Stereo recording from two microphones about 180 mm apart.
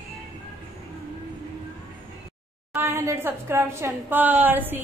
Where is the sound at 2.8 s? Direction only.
15° right (ahead or behind).